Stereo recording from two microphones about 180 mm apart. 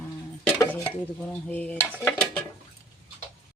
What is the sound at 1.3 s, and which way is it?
Speech, 10° left (ahead or behind).